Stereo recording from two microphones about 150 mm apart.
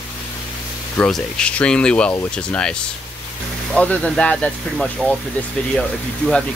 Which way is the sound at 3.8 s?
10° left (ahead or behind).